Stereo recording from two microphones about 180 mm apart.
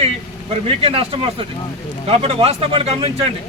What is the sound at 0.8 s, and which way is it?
A man's voice, 30° right (ahead or behind).